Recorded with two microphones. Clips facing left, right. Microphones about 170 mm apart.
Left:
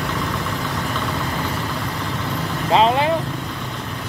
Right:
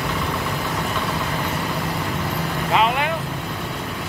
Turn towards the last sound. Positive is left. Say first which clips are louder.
# left 4 dB
turn(degrees=30)  # may be behind; listen again after turning